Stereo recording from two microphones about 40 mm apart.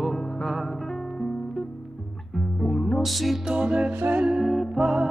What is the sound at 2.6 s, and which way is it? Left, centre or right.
Music, centre.